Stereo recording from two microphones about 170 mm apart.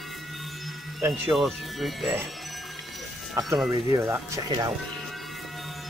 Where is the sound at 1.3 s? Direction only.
Centre (ahead or behind).